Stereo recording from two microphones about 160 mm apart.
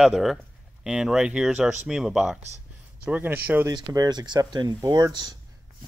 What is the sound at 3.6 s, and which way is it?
Speech, 20° right (ahead or behind).